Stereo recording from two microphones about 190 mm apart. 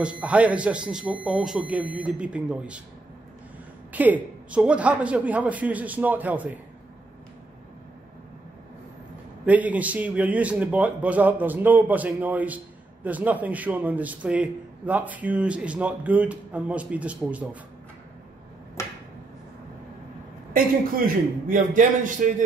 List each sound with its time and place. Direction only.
0.0 s a man's voice: 5° right (ahead or behind)
3.9 s a man's voice: 10° right (ahead or behind)
9.5 s a man's voice: 10° right (ahead or behind)
20.5 s a man's voice: 50° right (ahead or behind)